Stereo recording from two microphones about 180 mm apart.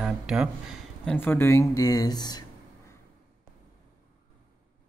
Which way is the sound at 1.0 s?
10° left (ahead or behind).